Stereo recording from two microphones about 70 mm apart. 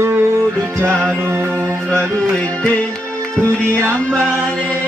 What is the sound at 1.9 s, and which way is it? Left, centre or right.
Music, centre.